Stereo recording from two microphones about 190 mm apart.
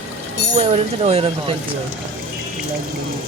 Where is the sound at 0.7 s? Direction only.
35° right (ahead or behind).